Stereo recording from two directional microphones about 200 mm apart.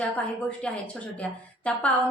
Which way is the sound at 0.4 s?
5° left (ahead or behind).